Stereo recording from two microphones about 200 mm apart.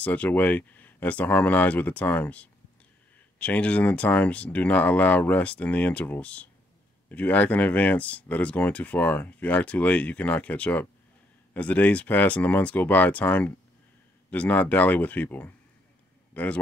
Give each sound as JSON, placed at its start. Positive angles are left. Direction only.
{"t": 0.0, "sound": "speech", "side_deg": 5}